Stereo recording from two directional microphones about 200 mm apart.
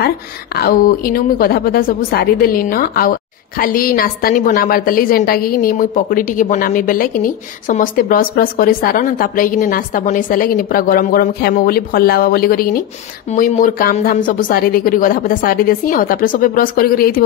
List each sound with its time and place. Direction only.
0.6 s a woman's voice: 50° left (ahead or behind)